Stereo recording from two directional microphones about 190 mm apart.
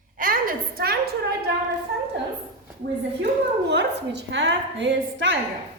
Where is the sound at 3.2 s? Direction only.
65° right (ahead or behind).